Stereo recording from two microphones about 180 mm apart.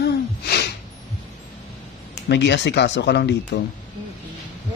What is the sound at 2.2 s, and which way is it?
A man's voice, 75° left (ahead or behind).